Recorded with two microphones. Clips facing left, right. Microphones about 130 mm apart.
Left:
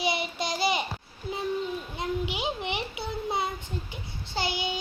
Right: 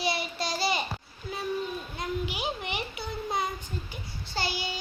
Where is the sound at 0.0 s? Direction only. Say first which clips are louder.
Left 1 dB; 20° left (ahead or behind).